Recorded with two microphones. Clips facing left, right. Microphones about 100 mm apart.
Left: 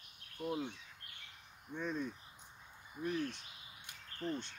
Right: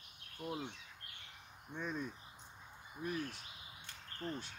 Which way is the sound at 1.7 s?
20° right (ahead or behind).